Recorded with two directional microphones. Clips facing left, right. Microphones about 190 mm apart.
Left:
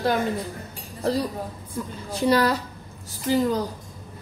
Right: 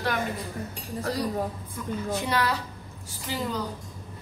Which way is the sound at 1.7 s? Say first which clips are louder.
Right 1 dB; 30° left (ahead or behind).